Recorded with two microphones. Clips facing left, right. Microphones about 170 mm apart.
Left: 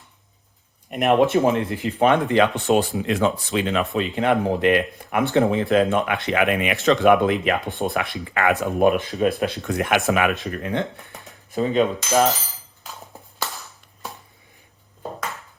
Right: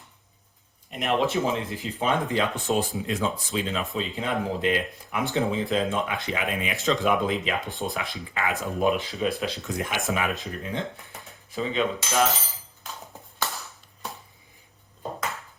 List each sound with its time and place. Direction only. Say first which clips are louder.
0.9 s speech: left 7 dB; 65° left (ahead or behind)
11.5 s cutlery: left 6 dB; 50° left (ahead or behind)